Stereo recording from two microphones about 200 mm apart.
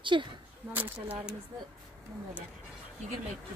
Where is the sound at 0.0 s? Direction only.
25° right (ahead or behind).